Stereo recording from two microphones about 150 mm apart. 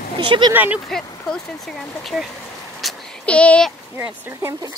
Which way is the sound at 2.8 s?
5° left (ahead or behind).